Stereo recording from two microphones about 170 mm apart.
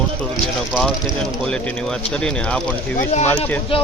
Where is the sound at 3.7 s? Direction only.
30° left (ahead or behind).